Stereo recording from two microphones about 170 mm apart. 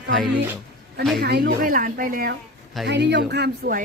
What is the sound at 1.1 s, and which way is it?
Speech, 70° right (ahead or behind).